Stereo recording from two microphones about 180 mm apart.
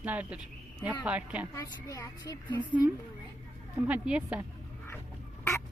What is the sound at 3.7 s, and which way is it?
Speech, 10° right (ahead or behind).